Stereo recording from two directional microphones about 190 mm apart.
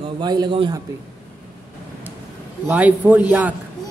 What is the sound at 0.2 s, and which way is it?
Speech, 25° right (ahead or behind).